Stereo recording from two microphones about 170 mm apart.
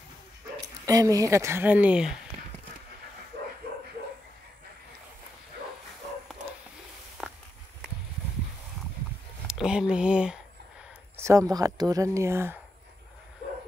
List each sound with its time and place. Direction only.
0.8 s speech: 20° right (ahead or behind)
7.2 s walk: 5° right (ahead or behind)
9.5 s speech: 5° right (ahead or behind)
11.1 s speech: 20° right (ahead or behind)